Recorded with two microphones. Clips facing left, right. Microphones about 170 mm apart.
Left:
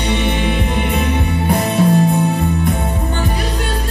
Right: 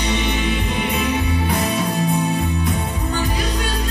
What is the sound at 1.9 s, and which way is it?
Music, 55° left (ahead or behind).